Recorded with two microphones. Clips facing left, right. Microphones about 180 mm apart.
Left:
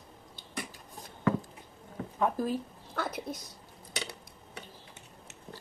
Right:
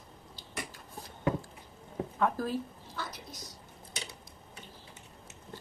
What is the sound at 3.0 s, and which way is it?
Dishes, 60° left (ahead or behind).